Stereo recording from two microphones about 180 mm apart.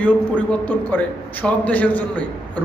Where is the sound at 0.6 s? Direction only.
10° left (ahead or behind).